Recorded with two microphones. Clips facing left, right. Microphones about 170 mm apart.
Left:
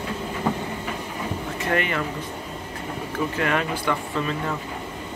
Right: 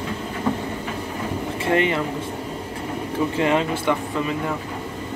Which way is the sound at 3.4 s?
20° right (ahead or behind).